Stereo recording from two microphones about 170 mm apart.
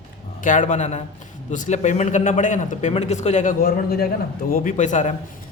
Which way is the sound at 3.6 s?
65° left (ahead or behind).